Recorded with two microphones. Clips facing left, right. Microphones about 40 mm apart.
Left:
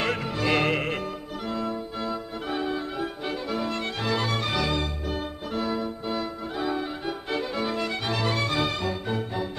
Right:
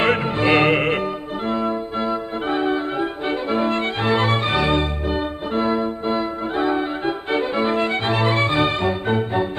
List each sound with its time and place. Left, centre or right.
0.0 s music: right
1.5 s brass instrument: right